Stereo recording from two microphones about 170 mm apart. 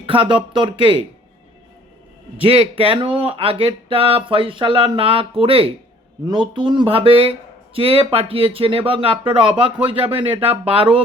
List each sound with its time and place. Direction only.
0.0 s speech: 30° right (ahead or behind)
2.4 s speech: 35° right (ahead or behind)